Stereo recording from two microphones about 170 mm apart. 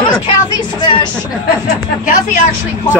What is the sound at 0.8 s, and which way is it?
Speech, 25° left (ahead or behind).